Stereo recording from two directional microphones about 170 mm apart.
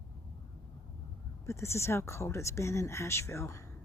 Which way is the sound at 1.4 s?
15° left (ahead or behind).